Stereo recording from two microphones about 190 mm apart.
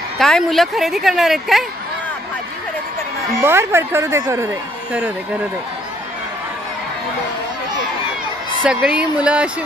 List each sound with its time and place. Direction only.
0.2 s speech: centre (ahead or behind)
3.4 s speech: 10° right (ahead or behind)
8.6 s speech: 5° right (ahead or behind)